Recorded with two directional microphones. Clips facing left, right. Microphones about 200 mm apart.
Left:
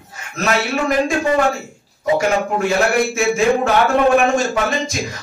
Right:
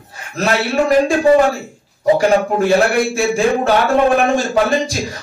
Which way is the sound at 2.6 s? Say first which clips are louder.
Right 3 dB; 35° right (ahead or behind).